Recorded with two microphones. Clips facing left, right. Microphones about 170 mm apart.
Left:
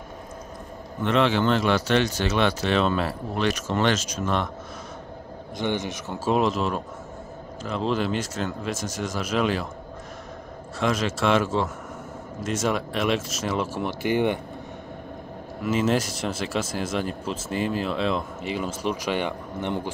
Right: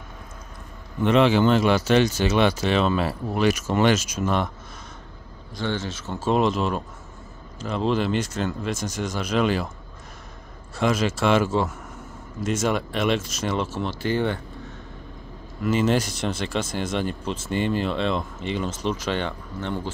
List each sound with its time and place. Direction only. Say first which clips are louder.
1.0 s speech: right 3 dB; 5° right (ahead or behind)
5.6 s speech: left 1 dB; 15° left (ahead or behind); by 9.7 s centre (ahead or behind)
10.8 s speech: right 2 dB; centre (ahead or behind)
13.8 s speech: left 3 dB; 15° left (ahead or behind)
15.6 s speech: right 1 dB; 5° left (ahead or behind)